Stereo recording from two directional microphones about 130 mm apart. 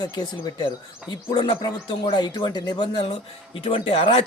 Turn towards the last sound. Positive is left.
turn(degrees=45)  # may be behind; listen again after turning